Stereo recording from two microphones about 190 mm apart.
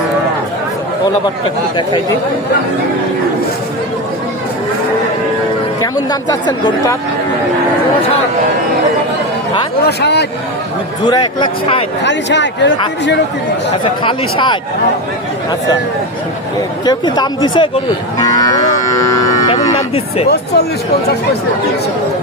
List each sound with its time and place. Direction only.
5.8 s speech: 20° left (ahead or behind)
9.8 s speech: 60° left (ahead or behind)
11.1 s speech: 25° left (ahead or behind)
12.0 s speech: 70° left (ahead or behind)
13.8 s speech: 25° left (ahead or behind)
16.8 s speech: 20° left (ahead or behind)
18.3 s livestock: 20° left (ahead or behind)